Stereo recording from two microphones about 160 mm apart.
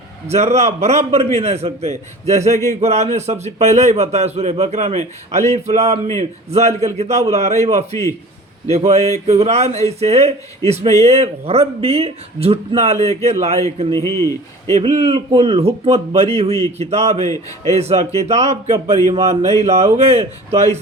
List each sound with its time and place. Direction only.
0.3 s a man's voice: 45° right (ahead or behind)
13.9 s speech: 20° left (ahead or behind)
14.8 s speech: 40° right (ahead or behind)